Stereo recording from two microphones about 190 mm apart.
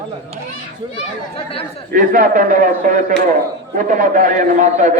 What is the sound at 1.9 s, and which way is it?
A man's voice, 45° right (ahead or behind).